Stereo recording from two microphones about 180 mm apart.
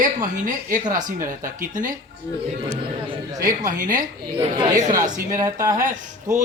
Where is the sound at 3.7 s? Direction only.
45° right (ahead or behind).